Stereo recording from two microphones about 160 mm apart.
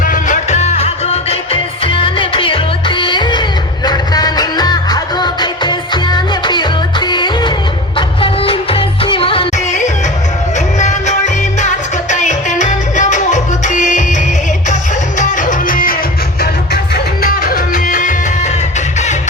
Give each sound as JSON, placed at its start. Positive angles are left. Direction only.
{"t": 0.0, "sound": "music", "side_deg": 55}
{"t": 10.8, "sound": "music", "side_deg": 45}
{"t": 12.2, "sound": "music", "side_deg": 50}
{"t": 15.2, "sound": "music", "side_deg": 55}
{"t": 16.4, "sound": "music", "side_deg": 80}